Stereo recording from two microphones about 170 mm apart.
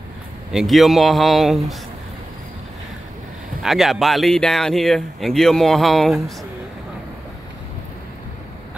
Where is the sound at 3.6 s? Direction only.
Centre (ahead or behind).